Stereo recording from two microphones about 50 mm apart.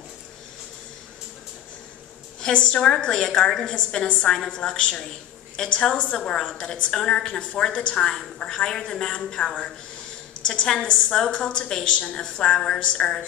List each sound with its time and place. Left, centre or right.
2.4 s a woman's voice: left